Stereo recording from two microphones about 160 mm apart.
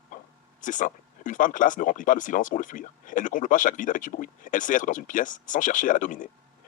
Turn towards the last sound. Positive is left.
turn(degrees=55)  # may be behind; listen again after turning